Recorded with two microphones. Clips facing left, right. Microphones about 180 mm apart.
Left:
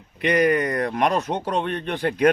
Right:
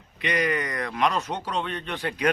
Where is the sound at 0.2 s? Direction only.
50° left (ahead or behind).